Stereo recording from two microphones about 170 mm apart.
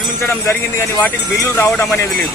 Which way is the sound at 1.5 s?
15° left (ahead or behind).